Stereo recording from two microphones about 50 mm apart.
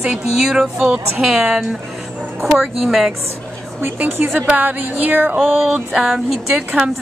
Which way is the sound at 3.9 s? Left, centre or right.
Right.